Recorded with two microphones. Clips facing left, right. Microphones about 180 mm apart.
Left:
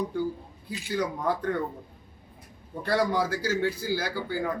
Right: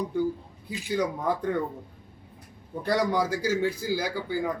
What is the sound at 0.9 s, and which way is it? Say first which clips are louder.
Speech: right 1 dB; 10° right (ahead or behind).